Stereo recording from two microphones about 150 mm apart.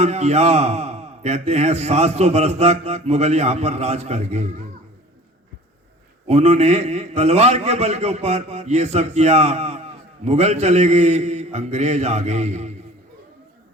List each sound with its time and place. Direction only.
0.0 s a man's voice: 45° right (ahead or behind)
6.2 s a man's voice: 45° right (ahead or behind)